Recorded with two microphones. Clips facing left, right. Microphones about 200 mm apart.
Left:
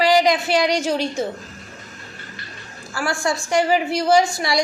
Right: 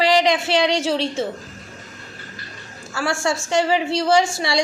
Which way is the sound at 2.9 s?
25° right (ahead or behind).